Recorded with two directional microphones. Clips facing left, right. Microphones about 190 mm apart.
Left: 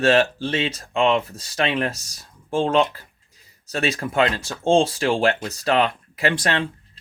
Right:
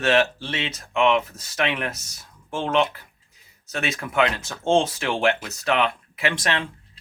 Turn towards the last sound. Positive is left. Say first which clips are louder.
# left 3 dB
turn(degrees=35)  # may be behind; listen again after turning